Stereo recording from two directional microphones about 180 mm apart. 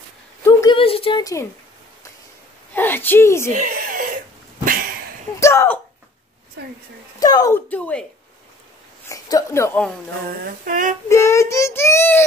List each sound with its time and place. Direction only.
0.5 s a sound: 25° left (ahead or behind)
1.2 s child singing: 15° left (ahead or behind)
2.7 s speech: 10° left (ahead or behind)
3.5 s laughter: 50° right (ahead or behind)
4.6 s a sound: 50° right (ahead or behind)
5.4 s child singing: 15° left (ahead or behind)
6.6 s a woman's voice: 70° right (ahead or behind)
7.2 s child singing: 20° left (ahead or behind)
9.1 s child singing: 15° left (ahead or behind)
10.4 s female singing: 50° right (ahead or behind)
11.1 s child singing: 15° left (ahead or behind)